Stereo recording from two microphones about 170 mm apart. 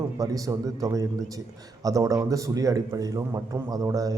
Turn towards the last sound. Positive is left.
turn(degrees=-20)  # may be behind; listen again after turning